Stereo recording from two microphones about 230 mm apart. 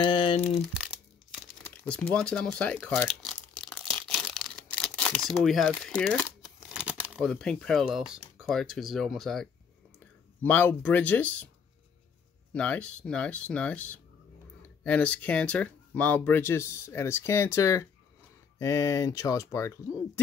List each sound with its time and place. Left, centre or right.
0.0 s crumpling: left
1.9 s crumpling: centre
6.7 s speech: centre
12.5 s speech: centre